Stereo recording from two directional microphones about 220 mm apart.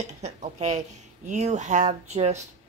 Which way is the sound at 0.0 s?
30° right (ahead or behind).